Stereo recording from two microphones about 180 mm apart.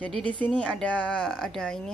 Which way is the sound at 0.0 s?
5° left (ahead or behind).